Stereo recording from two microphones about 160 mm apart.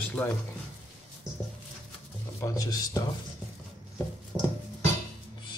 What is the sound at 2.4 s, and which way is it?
Speech, 20° left (ahead or behind).